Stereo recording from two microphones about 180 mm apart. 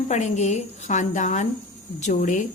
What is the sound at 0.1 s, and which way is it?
A woman's voice, 40° left (ahead or behind).